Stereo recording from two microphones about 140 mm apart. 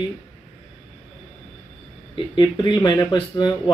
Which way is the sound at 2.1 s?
35° left (ahead or behind).